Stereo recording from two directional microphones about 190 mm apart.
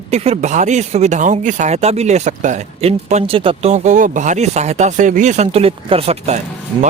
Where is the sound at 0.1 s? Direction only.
35° right (ahead or behind).